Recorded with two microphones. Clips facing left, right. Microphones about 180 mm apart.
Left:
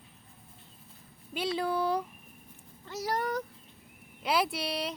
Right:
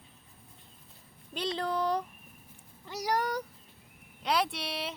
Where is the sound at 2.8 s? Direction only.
15° right (ahead or behind).